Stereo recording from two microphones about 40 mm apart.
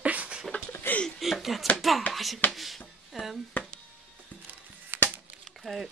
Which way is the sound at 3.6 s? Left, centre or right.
Left.